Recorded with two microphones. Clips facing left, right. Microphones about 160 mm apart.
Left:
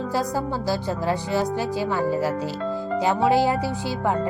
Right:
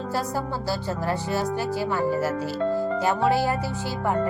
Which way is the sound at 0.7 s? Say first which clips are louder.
Left 2 dB; 15° left (ahead or behind).